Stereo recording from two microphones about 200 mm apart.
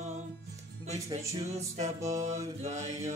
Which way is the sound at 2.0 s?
15° right (ahead or behind).